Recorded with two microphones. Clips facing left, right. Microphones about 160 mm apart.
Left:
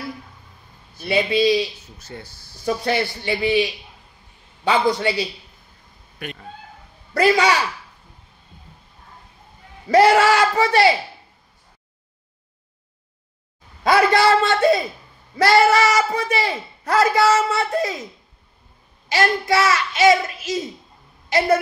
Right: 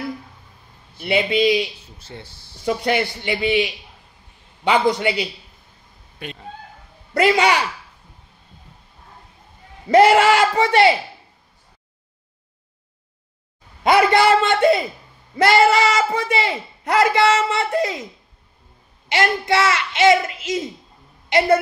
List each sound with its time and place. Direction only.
0.9 s speech: 20° right (ahead or behind)
9.8 s speech: 20° right (ahead or behind)
13.8 s speech: 25° right (ahead or behind)
19.0 s speech: 25° right (ahead or behind)